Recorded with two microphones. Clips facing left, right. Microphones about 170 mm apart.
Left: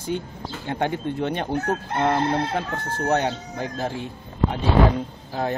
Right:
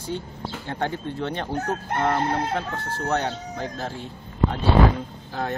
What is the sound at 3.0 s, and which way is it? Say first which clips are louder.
Speech: left 3 dB; 15° left (ahead or behind).